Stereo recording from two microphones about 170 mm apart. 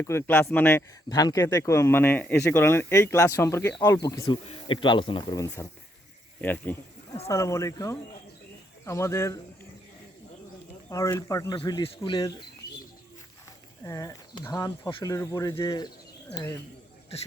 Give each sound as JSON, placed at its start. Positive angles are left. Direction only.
{"t": 0.0, "sound": "speech", "side_deg": 15}
{"t": 6.4, "sound": "speech", "side_deg": 10}
{"t": 10.8, "sound": "speech", "side_deg": 20}
{"t": 13.8, "sound": "speech", "side_deg": 20}